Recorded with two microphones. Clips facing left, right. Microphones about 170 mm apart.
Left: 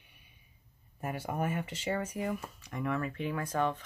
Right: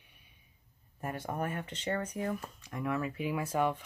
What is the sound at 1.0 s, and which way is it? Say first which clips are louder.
Speech: left 1 dB; 5° left (ahead or behind).